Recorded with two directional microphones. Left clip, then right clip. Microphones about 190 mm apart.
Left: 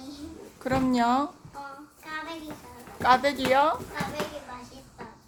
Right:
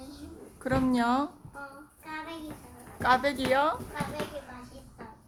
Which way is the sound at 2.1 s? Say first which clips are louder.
Left 3 dB; centre (ahead or behind).